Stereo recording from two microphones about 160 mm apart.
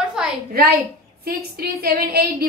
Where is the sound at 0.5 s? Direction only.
80° right.